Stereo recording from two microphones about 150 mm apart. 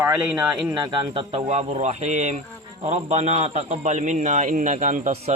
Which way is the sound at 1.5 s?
50° right (ahead or behind).